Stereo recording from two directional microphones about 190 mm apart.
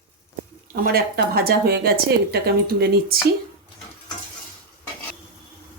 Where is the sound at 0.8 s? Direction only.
55° right (ahead or behind).